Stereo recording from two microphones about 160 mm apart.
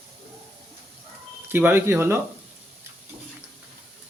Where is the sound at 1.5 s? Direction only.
10° right (ahead or behind).